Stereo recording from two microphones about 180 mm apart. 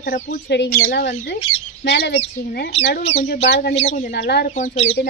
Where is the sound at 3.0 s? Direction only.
35° left (ahead or behind).